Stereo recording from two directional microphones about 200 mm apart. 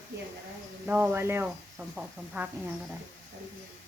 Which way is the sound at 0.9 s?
10° right (ahead or behind).